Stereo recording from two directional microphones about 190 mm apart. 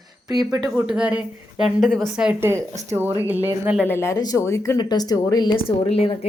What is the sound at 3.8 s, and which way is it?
A woman's voice, 10° left (ahead or behind).